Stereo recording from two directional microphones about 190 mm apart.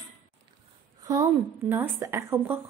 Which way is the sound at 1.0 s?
20° right (ahead or behind).